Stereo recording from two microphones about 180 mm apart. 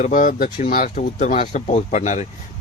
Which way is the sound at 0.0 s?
45° left (ahead or behind).